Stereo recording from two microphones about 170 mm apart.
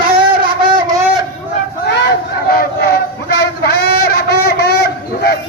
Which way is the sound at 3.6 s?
70° left (ahead or behind).